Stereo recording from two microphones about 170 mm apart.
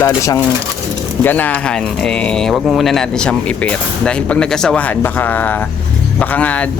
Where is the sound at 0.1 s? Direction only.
20° left (ahead or behind).